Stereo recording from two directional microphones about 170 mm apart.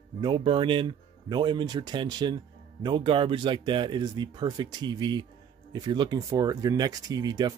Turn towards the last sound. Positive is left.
turn(degrees=-25)  # may be behind; listen again after turning